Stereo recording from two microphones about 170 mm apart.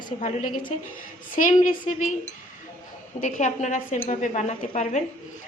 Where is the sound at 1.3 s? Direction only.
50° left (ahead or behind).